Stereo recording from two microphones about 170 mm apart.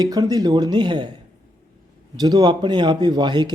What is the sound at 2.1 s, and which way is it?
Speech, 25° right (ahead or behind).